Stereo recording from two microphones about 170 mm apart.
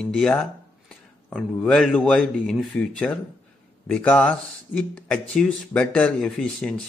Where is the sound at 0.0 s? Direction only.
5° left (ahead or behind).